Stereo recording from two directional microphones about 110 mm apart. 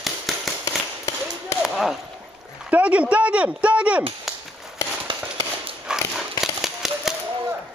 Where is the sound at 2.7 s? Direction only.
10° right (ahead or behind).